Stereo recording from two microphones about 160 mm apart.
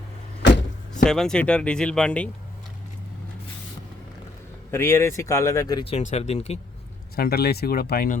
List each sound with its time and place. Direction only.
1.0 s speech: 5° left (ahead or behind)
4.7 s speech: 15° left (ahead or behind)
5.8 s speech: 45° left (ahead or behind)
7.2 s speech: 80° left